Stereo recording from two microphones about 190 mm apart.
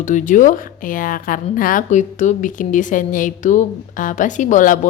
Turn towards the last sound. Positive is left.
turn(degrees=40)  # may be behind; listen again after turning